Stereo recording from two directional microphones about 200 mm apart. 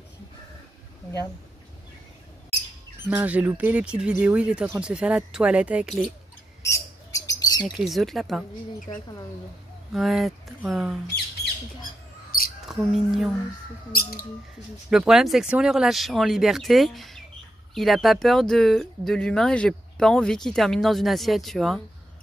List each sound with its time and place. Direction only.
3.1 s speech: 5° right (ahead or behind)
6.6 s chirp: 15° left (ahead or behind)
7.7 s speech: centre (ahead or behind)
8.9 s a woman's voice: 20° left (ahead or behind)
9.9 s speech: centre (ahead or behind)
12.6 s speech: centre (ahead or behind)
14.9 s speech: centre (ahead or behind)